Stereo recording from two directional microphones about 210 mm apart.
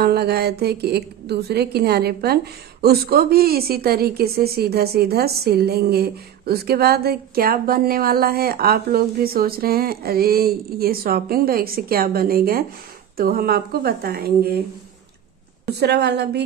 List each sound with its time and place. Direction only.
0.0 s a woman's voice: 50° right (ahead or behind)
15.7 s a woman's voice: 50° right (ahead or behind)